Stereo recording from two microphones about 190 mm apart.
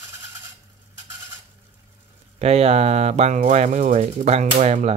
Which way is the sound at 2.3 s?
35° right (ahead or behind).